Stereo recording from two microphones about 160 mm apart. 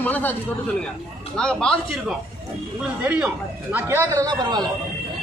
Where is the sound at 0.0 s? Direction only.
10° left (ahead or behind).